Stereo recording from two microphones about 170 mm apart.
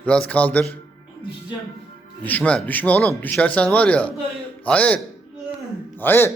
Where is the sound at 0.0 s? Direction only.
5° left (ahead or behind).